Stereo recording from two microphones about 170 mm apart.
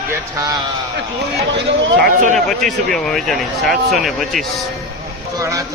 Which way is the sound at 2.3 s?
Centre (ahead or behind).